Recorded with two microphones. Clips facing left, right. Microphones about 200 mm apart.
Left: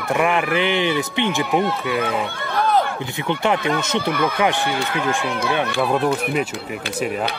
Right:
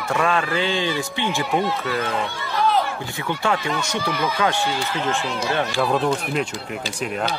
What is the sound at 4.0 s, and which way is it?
Speech, 55° left (ahead or behind).